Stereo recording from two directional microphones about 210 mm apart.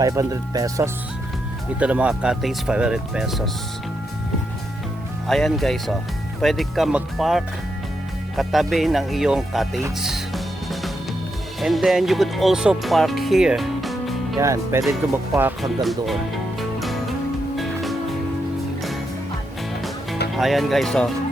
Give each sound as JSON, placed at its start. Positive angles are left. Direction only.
{"t": 0.0, "sound": "speech", "side_deg": -15}
{"t": 5.3, "sound": "speech", "side_deg": 0}
{"t": 10.0, "sound": "music", "side_deg": 0}
{"t": 11.6, "sound": "speech", "side_deg": 0}
{"t": 14.3, "sound": "speech", "side_deg": -15}
{"t": 16.6, "sound": "music", "side_deg": 0}
{"t": 20.3, "sound": "speech", "side_deg": 0}